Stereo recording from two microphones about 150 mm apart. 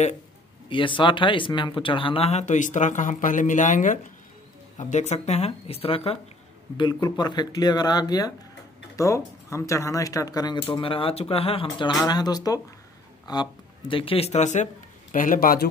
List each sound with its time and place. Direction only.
0.7 s speech: 35° left (ahead or behind)
6.8 s speech: 30° left (ahead or behind)
12.0 s speech: 25° left (ahead or behind); by 14.7 s 50° left (ahead or behind)
15.1 s speech: 65° left (ahead or behind)